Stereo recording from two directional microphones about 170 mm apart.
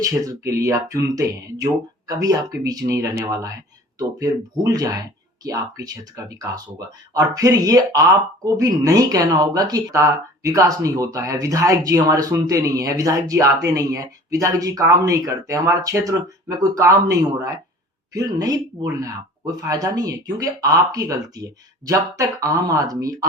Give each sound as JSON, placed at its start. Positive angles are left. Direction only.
{"t": 0.0, "sound": "speech", "side_deg": -20}